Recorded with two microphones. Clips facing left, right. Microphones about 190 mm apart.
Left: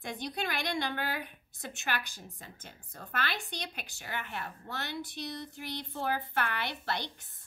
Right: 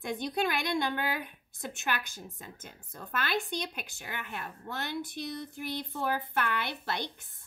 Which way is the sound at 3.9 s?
50° right (ahead or behind).